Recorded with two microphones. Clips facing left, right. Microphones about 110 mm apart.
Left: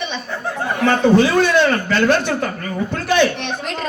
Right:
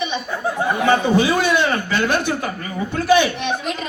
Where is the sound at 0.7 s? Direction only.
15° right (ahead or behind).